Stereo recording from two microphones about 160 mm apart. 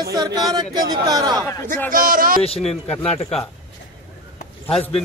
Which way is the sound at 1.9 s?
60° right (ahead or behind).